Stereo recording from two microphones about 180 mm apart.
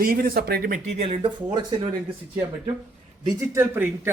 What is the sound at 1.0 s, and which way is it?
Speech, 30° right (ahead or behind).